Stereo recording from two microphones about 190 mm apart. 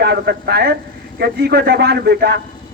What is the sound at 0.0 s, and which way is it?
Speech, 60° right (ahead or behind).